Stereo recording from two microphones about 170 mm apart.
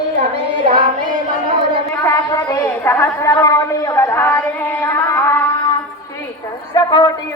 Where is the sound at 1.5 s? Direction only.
30° right (ahead or behind).